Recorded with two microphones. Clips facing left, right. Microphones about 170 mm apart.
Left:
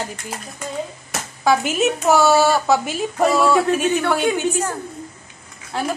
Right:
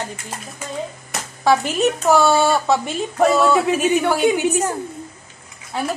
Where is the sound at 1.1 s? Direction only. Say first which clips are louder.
Right 1 dB; centre (ahead or behind).